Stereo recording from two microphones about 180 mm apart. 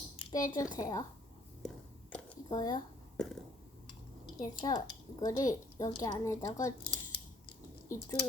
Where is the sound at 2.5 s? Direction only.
20° left (ahead or behind).